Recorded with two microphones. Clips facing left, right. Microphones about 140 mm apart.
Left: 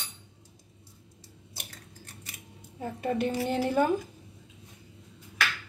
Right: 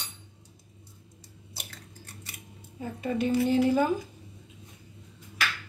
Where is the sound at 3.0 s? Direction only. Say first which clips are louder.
Right 3 dB; 55° left (ahead or behind).